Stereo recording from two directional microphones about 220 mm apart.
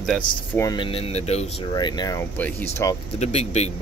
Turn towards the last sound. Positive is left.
turn(degrees=30)  # may be behind; listen again after turning